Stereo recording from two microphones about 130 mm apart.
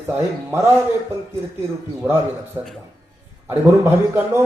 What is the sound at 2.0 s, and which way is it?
Speech, 15° right (ahead or behind).